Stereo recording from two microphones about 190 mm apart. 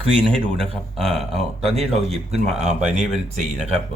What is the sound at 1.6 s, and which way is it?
Speech, 35° right (ahead or behind).